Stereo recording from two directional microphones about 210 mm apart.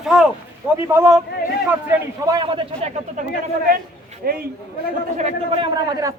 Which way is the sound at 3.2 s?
35° right (ahead or behind).